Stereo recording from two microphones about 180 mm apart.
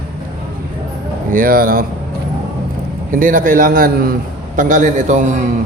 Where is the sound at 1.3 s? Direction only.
50° right (ahead or behind).